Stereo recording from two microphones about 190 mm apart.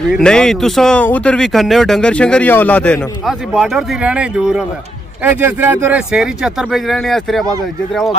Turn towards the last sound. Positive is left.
turn(degrees=0)  # may be behind; listen again after turning